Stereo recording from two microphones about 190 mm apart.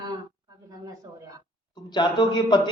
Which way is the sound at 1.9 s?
25° left (ahead or behind).